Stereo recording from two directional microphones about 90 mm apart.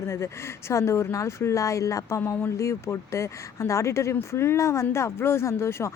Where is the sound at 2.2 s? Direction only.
25° left (ahead or behind).